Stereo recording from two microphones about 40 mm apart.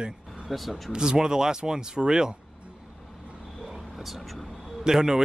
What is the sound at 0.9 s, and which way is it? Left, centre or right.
Speech, centre.